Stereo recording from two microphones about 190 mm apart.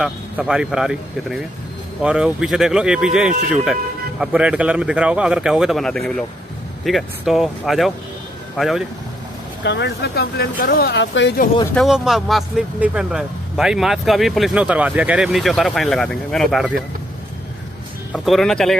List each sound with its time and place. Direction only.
0.0 s speech: 5° right (ahead or behind)
9.6 s speech: 70° left (ahead or behind)
11.7 s speech: centre (ahead or behind)
18.1 s speech: centre (ahead or behind)